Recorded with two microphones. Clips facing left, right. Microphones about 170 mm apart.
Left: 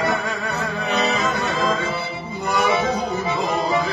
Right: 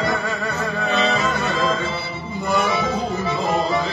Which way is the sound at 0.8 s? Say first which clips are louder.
Right 1 dB; 15° left (ahead or behind).